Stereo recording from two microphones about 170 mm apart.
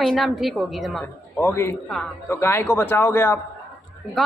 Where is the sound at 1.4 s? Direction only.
15° left (ahead or behind).